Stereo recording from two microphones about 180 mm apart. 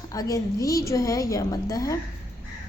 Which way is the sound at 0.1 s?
20° left (ahead or behind).